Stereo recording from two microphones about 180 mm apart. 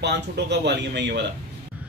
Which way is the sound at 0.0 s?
70° right (ahead or behind).